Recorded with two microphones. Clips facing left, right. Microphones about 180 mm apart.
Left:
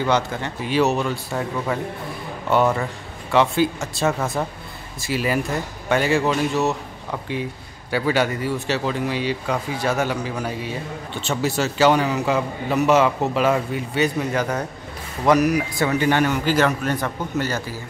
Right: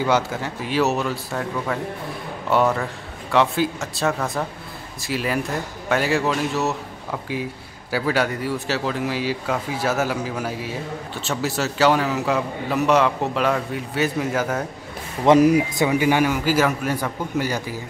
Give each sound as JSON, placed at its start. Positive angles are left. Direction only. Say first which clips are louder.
{"t": 0.0, "sound": "speech", "louder": "even", "side_deg": -5}
{"t": 15.2, "sound": "a man's voice", "louder": "right 3 dB", "side_deg": -25}